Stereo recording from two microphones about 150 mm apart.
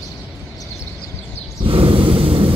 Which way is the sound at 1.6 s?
35° right (ahead or behind).